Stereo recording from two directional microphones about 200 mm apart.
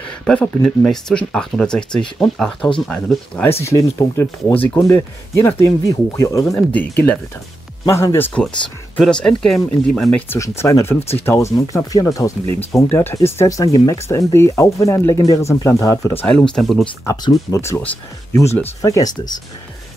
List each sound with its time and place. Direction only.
0.3 s speech: 5° left (ahead or behind)
7.9 s speech: 15° left (ahead or behind)
17.0 s speech: 15° left (ahead or behind)